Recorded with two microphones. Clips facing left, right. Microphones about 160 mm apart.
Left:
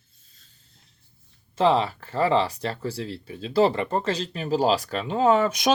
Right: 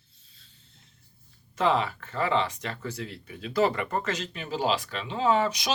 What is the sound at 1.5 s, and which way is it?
Speech, 30° left (ahead or behind).